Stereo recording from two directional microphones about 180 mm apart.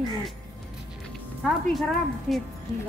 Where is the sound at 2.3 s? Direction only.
5° left (ahead or behind).